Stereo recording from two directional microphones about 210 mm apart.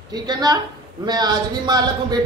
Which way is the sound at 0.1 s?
20° right (ahead or behind).